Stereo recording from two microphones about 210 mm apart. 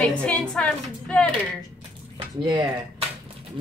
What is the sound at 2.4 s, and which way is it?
Speech, 25° right (ahead or behind).